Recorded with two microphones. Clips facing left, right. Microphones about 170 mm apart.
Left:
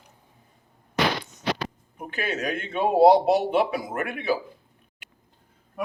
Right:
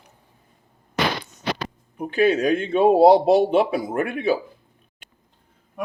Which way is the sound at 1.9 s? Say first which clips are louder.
Right 11 dB; 35° right (ahead or behind).